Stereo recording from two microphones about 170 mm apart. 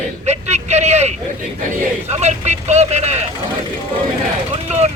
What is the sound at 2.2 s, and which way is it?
Speech, 40° right (ahead or behind).